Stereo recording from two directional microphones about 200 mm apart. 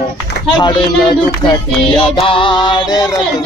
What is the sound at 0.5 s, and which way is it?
Music, 20° left (ahead or behind).